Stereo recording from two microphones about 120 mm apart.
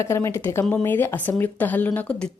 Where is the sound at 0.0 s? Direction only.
25° left (ahead or behind).